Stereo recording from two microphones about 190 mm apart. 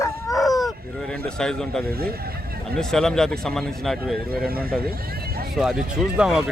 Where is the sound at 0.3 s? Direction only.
20° left (ahead or behind).